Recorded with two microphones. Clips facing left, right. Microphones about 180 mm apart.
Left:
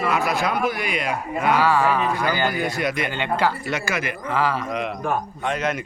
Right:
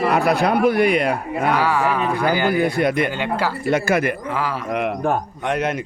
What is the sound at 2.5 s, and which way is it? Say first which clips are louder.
A man's voice: right 6 dB; 55° right (ahead or behind).